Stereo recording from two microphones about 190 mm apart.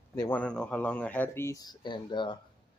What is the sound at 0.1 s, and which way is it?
Speech, 10° left (ahead or behind).